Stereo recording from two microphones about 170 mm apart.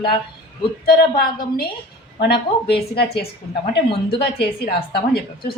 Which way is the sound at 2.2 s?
75° left (ahead or behind).